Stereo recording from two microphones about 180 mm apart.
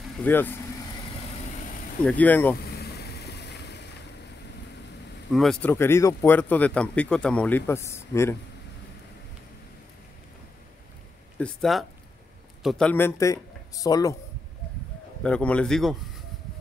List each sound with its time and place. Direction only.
0.2 s speech: 10° left (ahead or behind)
2.0 s speech: 10° left (ahead or behind)
2.6 s vehicle: 60° left (ahead or behind)
5.3 s speech: centre (ahead or behind)
11.3 s a man's voice: 5° left (ahead or behind); by 14.1 s 20° left (ahead or behind)
15.2 s a man's voice: 5° left (ahead or behind)